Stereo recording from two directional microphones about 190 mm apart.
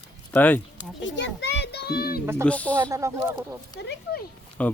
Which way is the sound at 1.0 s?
70° left (ahead or behind).